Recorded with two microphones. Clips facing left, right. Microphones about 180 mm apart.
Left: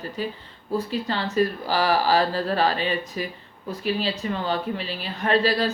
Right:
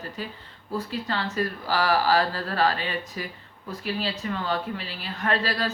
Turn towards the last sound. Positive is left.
turn(degrees=20)  # may be behind; listen again after turning